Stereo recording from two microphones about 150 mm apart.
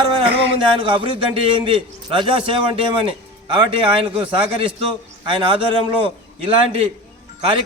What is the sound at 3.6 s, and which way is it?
Speech, 40° right (ahead or behind).